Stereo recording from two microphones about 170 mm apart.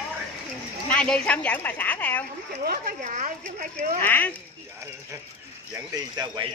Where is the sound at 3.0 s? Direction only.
45° right (ahead or behind).